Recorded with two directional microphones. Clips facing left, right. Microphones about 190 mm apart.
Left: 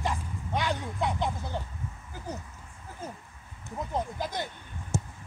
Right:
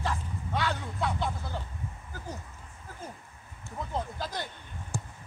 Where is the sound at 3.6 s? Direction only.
15° left (ahead or behind).